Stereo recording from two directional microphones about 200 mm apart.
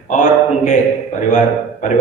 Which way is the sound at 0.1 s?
35° left (ahead or behind).